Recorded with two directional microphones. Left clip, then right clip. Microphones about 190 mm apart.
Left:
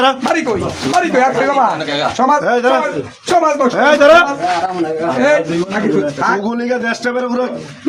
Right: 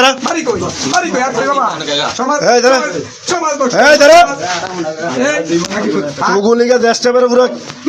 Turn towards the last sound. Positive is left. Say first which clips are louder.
# right 8 dB
turn(degrees=-30)  # may be behind; listen again after turning